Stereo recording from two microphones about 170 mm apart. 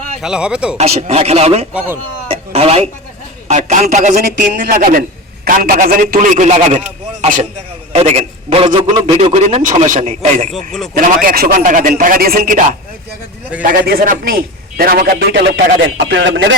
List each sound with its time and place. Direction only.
0.2 s speech: 5° right (ahead or behind)
0.8 s speech: 40° right (ahead or behind)
2.2 s a sound: 35° right (ahead or behind)
3.5 s a man's voice: 45° right (ahead or behind)
4.4 s a man's voice: 55° right (ahead or behind); by 9.1 s 25° right (ahead or behind)
9.1 s speech: 35° right (ahead or behind)
9.8 s a man's voice: 50° right (ahead or behind)
10.5 s speech: centre (ahead or behind)
10.9 s a man's voice: 55° right (ahead or behind)
13.8 s a man's voice: 65° right (ahead or behind); by 16.6 s 90° right